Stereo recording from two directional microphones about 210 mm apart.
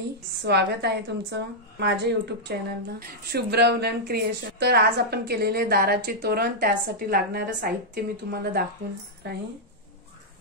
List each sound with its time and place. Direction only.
0.4 s a woman's voice: 55° right (ahead or behind)